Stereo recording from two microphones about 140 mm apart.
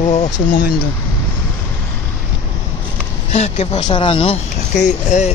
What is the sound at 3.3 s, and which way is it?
Speech, 45° left (ahead or behind).